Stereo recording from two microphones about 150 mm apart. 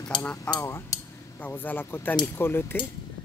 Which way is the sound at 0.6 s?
20° left (ahead or behind).